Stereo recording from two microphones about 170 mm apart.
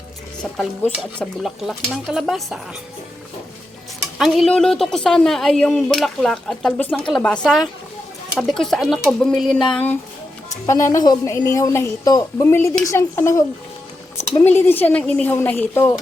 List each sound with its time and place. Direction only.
1.2 s speech: centre (ahead or behind)
4.2 s speech: centre (ahead or behind)
10.7 s a woman's voice: 20° left (ahead or behind)